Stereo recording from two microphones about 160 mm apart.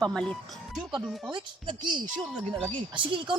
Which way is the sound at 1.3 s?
30° right (ahead or behind).